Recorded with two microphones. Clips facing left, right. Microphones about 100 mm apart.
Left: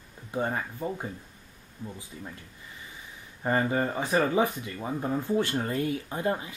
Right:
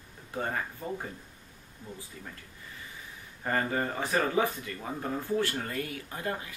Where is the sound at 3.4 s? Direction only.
20° left (ahead or behind).